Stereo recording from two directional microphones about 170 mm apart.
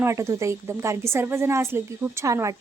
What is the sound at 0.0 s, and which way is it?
A woman's voice, 15° right (ahead or behind).